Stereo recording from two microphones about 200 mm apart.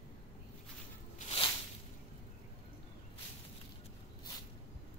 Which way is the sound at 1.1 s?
30° left (ahead or behind).